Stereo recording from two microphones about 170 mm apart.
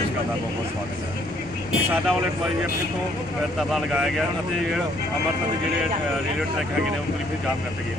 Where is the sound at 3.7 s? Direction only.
Centre (ahead or behind).